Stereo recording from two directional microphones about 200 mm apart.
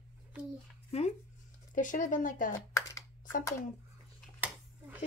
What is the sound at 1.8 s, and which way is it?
Speech, 40° left (ahead or behind).